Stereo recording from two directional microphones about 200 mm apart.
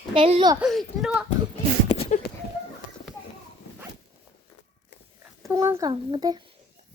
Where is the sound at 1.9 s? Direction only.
35° left (ahead or behind).